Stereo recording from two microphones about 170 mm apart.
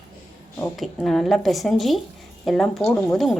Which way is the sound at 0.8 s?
Centre (ahead or behind).